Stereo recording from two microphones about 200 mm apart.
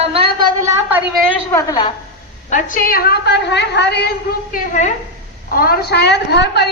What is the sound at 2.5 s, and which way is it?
A woman's voice, 40° left (ahead or behind).